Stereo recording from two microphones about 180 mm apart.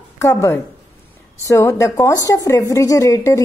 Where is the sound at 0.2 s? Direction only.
15° left (ahead or behind).